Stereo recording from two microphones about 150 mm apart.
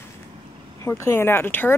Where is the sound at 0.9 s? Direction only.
15° left (ahead or behind).